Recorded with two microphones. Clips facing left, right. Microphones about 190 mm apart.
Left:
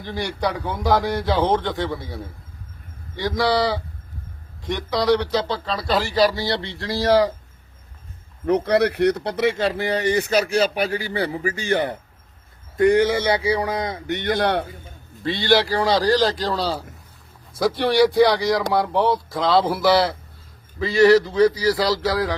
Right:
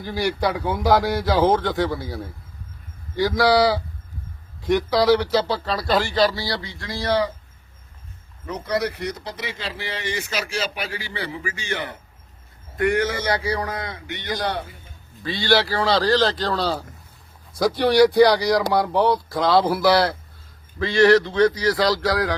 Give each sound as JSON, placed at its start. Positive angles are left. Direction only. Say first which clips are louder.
{"t": 0.0, "sound": "speech", "louder": "right 2 dB", "side_deg": -5}
{"t": 6.8, "sound": "a man's voice", "louder": "left 5 dB", "side_deg": 40}
{"t": 8.4, "sound": "a man's voice", "louder": "left 7 dB", "side_deg": 65}
{"t": 12.7, "sound": "speech", "louder": "left 5 dB", "side_deg": 20}
{"t": 13.4, "sound": "speech", "louder": "left 4 dB", "side_deg": 10}
{"t": 13.7, "sound": "speech", "louder": "left 6 dB", "side_deg": 25}
{"t": 14.1, "sound": "speech", "louder": "left 6 dB", "side_deg": 50}
{"t": 15.2, "sound": "speech", "louder": "left 2 dB", "side_deg": 20}